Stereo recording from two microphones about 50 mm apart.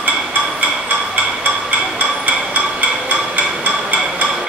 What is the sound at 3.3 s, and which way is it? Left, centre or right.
Hammer, right.